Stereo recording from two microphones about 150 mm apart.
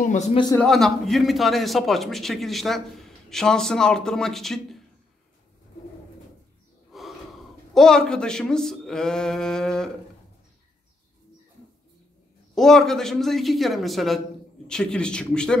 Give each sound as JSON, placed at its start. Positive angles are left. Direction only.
{"t": 0.0, "sound": "a man's voice", "side_deg": 55}
{"t": 0.6, "sound": "a man's voice", "side_deg": 5}
{"t": 6.9, "sound": "gasp", "side_deg": 0}
{"t": 7.7, "sound": "a man's voice", "side_deg": 5}
{"t": 12.5, "sound": "a man's voice", "side_deg": 0}